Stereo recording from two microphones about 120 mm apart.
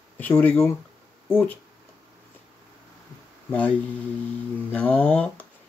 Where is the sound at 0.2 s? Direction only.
15° left (ahead or behind).